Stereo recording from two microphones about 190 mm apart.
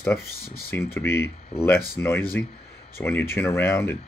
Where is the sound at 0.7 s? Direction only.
10° left (ahead or behind).